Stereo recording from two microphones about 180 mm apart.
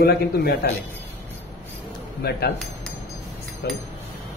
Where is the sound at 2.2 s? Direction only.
65° left (ahead or behind).